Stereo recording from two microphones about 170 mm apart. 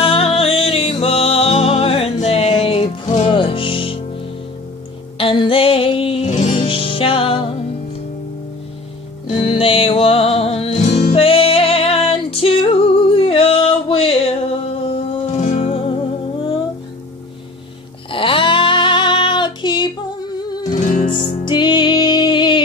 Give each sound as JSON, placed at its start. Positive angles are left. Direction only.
{"t": 0.0, "sound": "music", "side_deg": 35}
{"t": 5.1, "sound": "music", "side_deg": 30}
{"t": 9.3, "sound": "music", "side_deg": 30}
{"t": 18.1, "sound": "female singing", "side_deg": 30}
{"t": 20.3, "sound": "music", "side_deg": 25}
{"t": 20.8, "sound": "music", "side_deg": 50}
{"t": 21.1, "sound": "music", "side_deg": 25}